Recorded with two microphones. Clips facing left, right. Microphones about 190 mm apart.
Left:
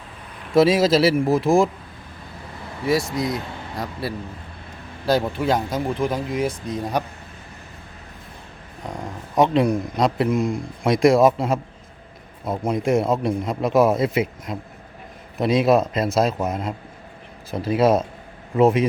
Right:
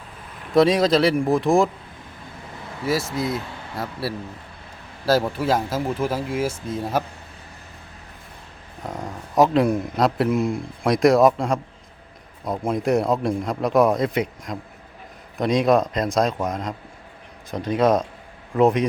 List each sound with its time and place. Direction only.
0.5 s speech: 5° left (ahead or behind)
2.8 s speech: centre (ahead or behind)
8.8 s speech: centre (ahead or behind)